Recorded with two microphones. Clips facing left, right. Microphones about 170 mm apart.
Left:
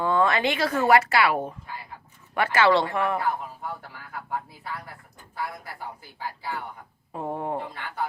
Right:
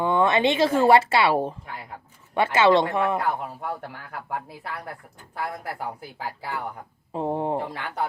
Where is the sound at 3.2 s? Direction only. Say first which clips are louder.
Right 2 dB; 65° right (ahead or behind).